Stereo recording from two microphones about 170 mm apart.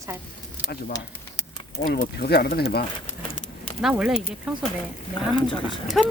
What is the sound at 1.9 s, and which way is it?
Speech, 65° left (ahead or behind).